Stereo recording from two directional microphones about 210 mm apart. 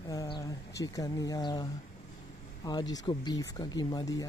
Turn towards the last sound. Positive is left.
turn(degrees=20)  # may be behind; listen again after turning